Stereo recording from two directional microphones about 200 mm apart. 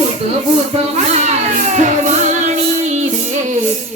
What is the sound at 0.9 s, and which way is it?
Child singing, 35° right (ahead or behind).